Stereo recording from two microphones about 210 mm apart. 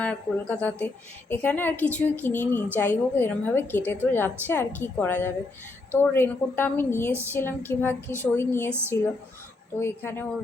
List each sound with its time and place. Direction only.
0.0 s a woman's voice: 5° left (ahead or behind)